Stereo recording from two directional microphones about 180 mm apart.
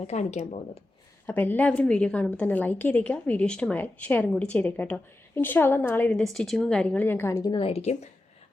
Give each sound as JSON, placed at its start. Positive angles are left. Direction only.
{"t": 0.1, "sound": "speech", "side_deg": 40}
{"t": 1.3, "sound": "a woman's voice", "side_deg": 10}